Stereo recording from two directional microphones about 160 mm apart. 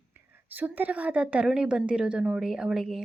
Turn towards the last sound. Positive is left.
turn(degrees=0)  # may be behind; listen again after turning